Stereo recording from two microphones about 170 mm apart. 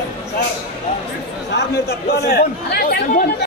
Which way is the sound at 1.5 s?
75° left (ahead or behind).